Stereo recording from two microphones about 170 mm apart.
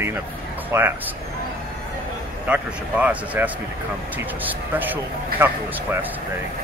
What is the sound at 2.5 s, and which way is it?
Speech, 5° right (ahead or behind).